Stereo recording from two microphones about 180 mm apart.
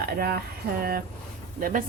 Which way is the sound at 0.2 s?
60° right (ahead or behind).